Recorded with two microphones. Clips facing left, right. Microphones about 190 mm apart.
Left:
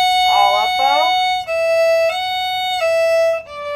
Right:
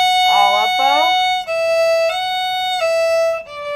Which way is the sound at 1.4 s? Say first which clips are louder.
Left 2 dB; 10° left (ahead or behind).